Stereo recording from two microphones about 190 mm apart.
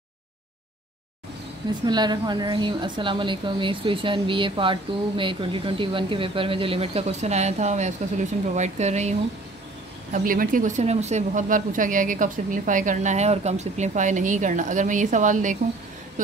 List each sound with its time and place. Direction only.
1.9 s a woman's voice: 20° right (ahead or behind)
10.1 s a woman's voice: 45° right (ahead or behind)